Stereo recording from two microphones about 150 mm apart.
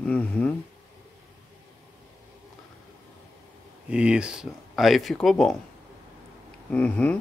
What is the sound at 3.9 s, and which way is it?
Speech, 5° right (ahead or behind).